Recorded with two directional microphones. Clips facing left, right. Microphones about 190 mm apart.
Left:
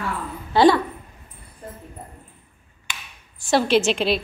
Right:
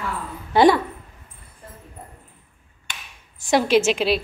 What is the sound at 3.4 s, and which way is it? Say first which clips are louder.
Speech: right 1 dB; 15° right (ahead or behind).